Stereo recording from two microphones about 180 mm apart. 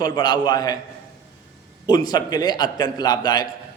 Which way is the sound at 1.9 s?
20° left (ahead or behind).